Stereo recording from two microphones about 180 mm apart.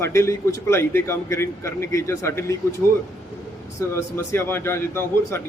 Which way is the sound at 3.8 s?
15° left (ahead or behind).